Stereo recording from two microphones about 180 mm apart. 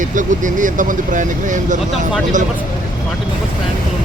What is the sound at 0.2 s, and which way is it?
Speech, 45° right (ahead or behind).